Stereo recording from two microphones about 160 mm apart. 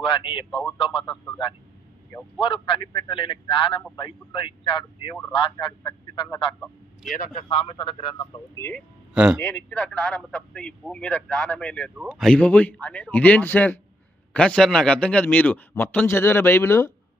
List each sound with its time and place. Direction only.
0.0 s a man's voice: 30° left (ahead or behind)
1.1 s a man's voice: 10° left (ahead or behind)
2.4 s a man's voice: 30° left (ahead or behind)
6.6 s speech: centre (ahead or behind)
7.5 s a man's voice: 35° left (ahead or behind)
9.1 s speech: 5° right (ahead or behind)
9.6 s a man's voice: 10° left (ahead or behind)